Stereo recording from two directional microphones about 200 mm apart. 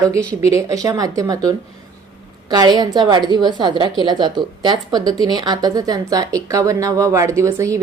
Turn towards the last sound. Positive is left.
turn(degrees=-15)  # may be behind; listen again after turning